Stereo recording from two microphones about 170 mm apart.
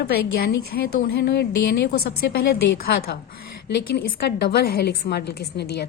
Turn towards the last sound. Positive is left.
turn(degrees=75)  # may be behind; listen again after turning